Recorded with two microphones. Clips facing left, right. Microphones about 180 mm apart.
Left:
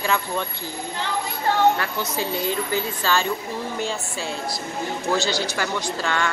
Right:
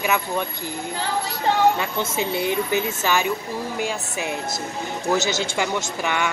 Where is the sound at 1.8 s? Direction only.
20° right (ahead or behind).